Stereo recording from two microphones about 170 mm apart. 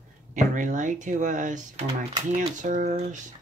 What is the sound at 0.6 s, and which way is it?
Speech, 45° right (ahead or behind).